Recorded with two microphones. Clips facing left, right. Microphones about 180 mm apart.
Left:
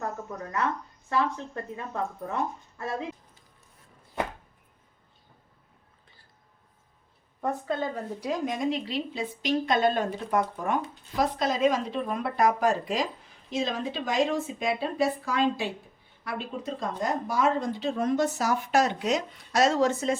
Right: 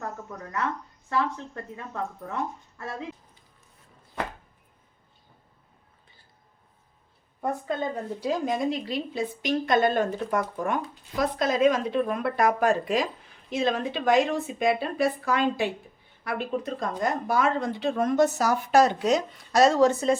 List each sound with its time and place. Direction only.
0.0 s a sound: 20° left (ahead or behind)
1.1 s speech: 20° left (ahead or behind)
7.4 s a woman's voice: 20° right (ahead or behind); by 10.1 s 50° right (ahead or behind)
11.2 s a woman's voice: 55° right (ahead or behind); by 20.1 s 35° right (ahead or behind)